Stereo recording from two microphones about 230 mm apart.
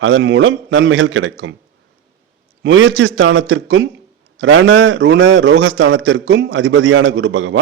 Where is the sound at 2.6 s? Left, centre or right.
Right.